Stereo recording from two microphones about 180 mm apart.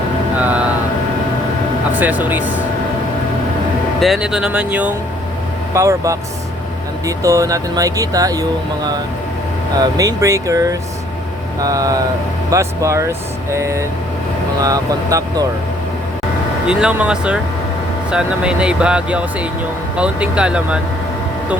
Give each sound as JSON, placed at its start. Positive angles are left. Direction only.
{"t": 0.3, "sound": "a sound", "side_deg": -10}
{"t": 2.0, "sound": "speech", "side_deg": -10}
{"t": 4.0, "sound": "speech", "side_deg": 0}
{"t": 16.6, "sound": "speech", "side_deg": -5}